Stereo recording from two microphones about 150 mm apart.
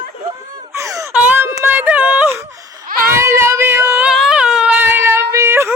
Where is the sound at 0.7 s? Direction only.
20° right (ahead or behind).